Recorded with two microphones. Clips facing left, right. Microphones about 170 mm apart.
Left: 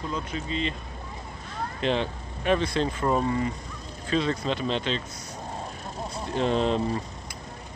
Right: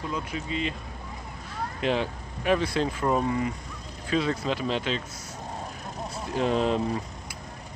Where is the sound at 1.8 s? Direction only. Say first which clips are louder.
Even; 5° right (ahead or behind).